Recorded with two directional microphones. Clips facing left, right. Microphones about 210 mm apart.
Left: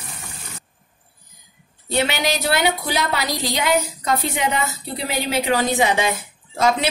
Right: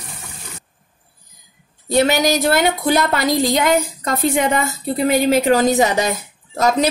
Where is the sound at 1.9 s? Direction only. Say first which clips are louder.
Right 6 dB; 40° right (ahead or behind).